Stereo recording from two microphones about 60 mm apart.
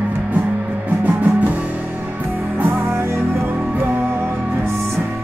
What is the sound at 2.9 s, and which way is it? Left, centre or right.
Music, right.